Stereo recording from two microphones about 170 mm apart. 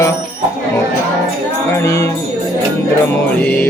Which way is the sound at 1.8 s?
15° left (ahead or behind).